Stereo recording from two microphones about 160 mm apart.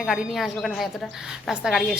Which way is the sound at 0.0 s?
Centre (ahead or behind).